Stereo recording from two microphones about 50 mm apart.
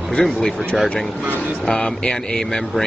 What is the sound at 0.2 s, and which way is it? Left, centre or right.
Speech, centre.